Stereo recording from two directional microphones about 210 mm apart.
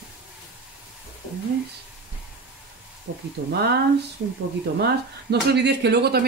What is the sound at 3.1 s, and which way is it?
Speech, 65° right (ahead or behind).